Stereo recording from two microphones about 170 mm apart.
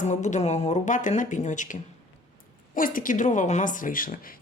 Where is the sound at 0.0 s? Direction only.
45° left (ahead or behind).